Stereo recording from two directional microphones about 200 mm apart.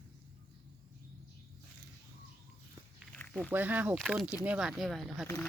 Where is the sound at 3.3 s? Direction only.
5° right (ahead or behind).